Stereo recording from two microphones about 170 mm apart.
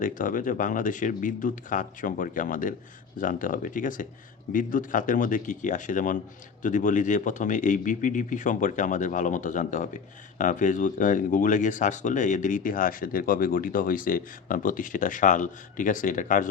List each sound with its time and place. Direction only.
0.0 s speech: 50° left (ahead or behind)